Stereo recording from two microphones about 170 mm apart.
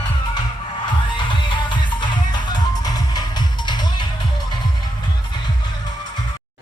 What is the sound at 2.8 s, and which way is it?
Music, 25° left (ahead or behind).